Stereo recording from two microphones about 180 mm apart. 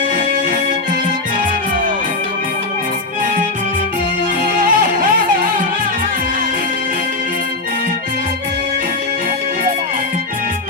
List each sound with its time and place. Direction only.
4.6 s music: 55° right (ahead or behind)